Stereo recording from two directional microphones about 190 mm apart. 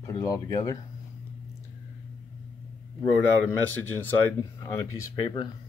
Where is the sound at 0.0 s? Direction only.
15° left (ahead or behind).